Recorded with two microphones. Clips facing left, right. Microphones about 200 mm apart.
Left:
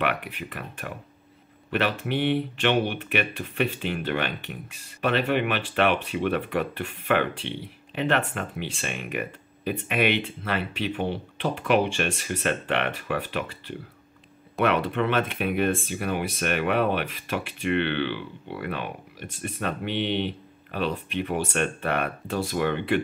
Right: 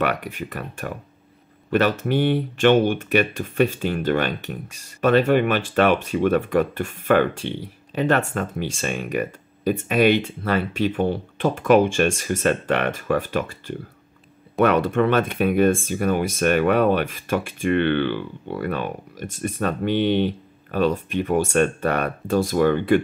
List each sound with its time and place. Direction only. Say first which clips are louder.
0.0 s speech: right 4 dB; 45° right (ahead or behind)